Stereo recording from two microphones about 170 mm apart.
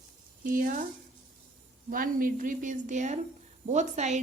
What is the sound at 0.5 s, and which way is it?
Speech, 55° right (ahead or behind).